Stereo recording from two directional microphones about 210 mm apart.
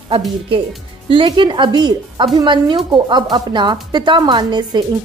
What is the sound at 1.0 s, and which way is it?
A woman's voice, 25° right (ahead or behind).